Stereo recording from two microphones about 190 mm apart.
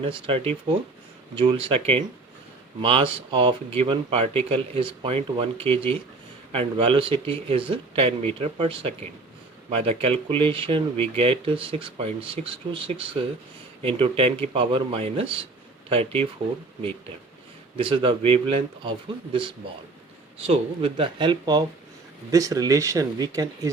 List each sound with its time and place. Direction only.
0.0 s speech: 30° right (ahead or behind)
17.7 s speech: 25° right (ahead or behind)